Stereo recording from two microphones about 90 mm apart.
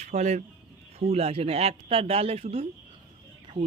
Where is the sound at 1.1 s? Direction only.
90° right.